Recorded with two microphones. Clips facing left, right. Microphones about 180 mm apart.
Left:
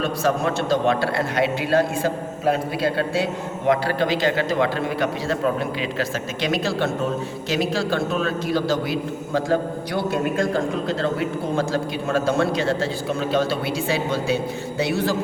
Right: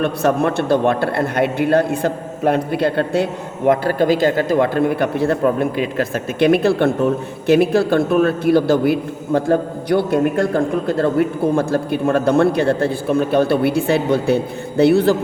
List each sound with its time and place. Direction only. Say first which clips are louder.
0.0 s a man's voice: right 5 dB; 60° right (ahead or behind)